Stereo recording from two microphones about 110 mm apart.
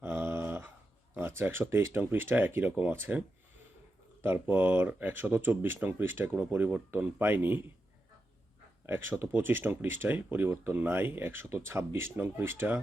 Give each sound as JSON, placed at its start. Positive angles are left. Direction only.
{"t": 0.0, "sound": "dog", "side_deg": -20}
{"t": 1.4, "sound": "speech", "side_deg": -20}
{"t": 8.9, "sound": "speech", "side_deg": -20}